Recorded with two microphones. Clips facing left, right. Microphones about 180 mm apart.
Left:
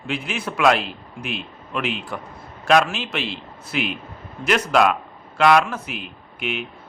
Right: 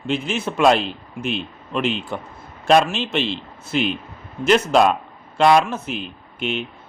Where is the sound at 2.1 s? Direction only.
25° right (ahead or behind).